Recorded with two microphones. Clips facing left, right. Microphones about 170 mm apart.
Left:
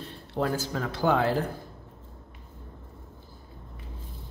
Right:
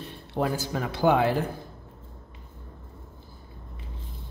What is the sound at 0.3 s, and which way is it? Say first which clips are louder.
Speech: right 1 dB; 15° right (ahead or behind).